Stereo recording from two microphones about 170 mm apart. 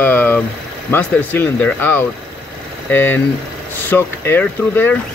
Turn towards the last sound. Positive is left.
turn(degrees=10)  # may be behind; listen again after turning